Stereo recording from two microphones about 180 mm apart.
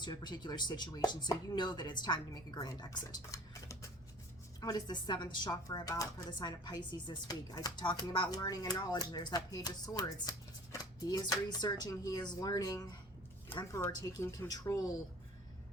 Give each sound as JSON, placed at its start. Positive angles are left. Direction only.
{"t": 0.0, "sound": "speech", "side_deg": 25}